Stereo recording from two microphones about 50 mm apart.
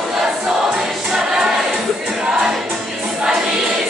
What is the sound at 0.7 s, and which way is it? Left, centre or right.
Choir, centre.